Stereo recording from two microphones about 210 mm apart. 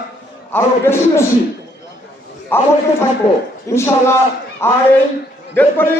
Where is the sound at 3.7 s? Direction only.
10° left (ahead or behind).